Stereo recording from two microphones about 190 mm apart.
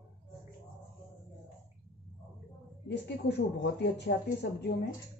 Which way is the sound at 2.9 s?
60° left (ahead or behind).